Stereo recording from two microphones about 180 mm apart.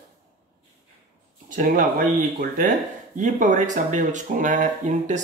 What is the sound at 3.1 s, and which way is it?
Speech, 45° right (ahead or behind).